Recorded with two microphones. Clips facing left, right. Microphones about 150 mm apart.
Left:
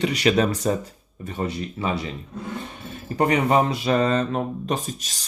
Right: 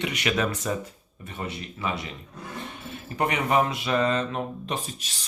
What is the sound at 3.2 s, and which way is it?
Speech, 35° left (ahead or behind).